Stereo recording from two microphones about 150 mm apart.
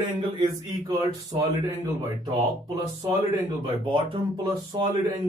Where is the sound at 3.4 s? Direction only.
35° right (ahead or behind).